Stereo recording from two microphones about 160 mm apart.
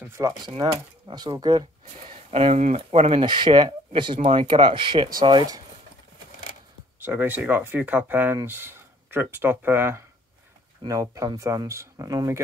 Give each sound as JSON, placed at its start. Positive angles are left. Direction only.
{"t": 0.2, "sound": "speech", "side_deg": -20}
{"t": 2.0, "sound": "speech", "side_deg": -40}
{"t": 4.2, "sound": "speech", "side_deg": -45}
{"t": 4.6, "sound": "speech", "side_deg": -30}
{"t": 7.0, "sound": "speech", "side_deg": -10}